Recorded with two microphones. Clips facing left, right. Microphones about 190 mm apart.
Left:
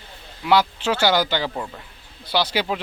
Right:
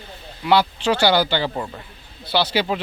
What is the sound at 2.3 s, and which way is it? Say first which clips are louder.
Speech: right 2 dB; 10° left (ahead or behind).